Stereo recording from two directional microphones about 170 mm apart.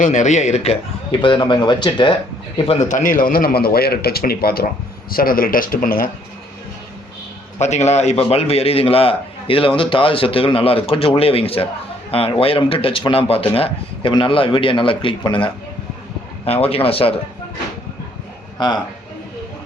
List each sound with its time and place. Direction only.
0.0 s a man's voice: 45° left (ahead or behind); by 2.1 s 25° left (ahead or behind)
2.6 s a man's voice: 50° left (ahead or behind)
7.6 s a man's voice: 40° left (ahead or behind)
16.5 s a man's voice: 35° left (ahead or behind)
18.5 s speech: 25° left (ahead or behind)